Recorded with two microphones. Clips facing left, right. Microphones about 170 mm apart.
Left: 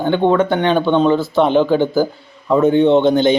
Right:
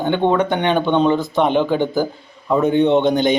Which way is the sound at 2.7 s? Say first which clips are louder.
Left 1 dB; 15° right (ahead or behind).